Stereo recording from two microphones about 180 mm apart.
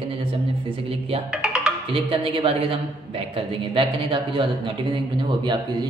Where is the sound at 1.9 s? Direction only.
30° right (ahead or behind).